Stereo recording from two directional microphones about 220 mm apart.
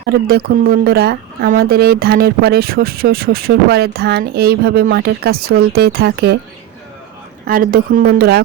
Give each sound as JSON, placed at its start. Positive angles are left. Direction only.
{"t": 0.1, "sound": "speech", "side_deg": -45}
{"t": 7.4, "sound": "speech", "side_deg": -40}